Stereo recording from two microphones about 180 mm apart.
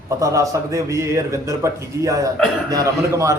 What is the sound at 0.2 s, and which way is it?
Speech, 15° right (ahead or behind).